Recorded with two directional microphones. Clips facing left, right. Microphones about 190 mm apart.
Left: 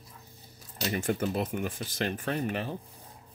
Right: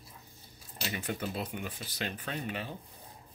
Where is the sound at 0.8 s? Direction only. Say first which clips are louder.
Left 7 dB; 45° left (ahead or behind).